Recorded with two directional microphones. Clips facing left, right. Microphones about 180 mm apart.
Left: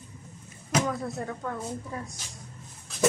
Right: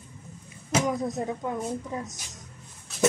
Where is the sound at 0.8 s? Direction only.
15° right (ahead or behind).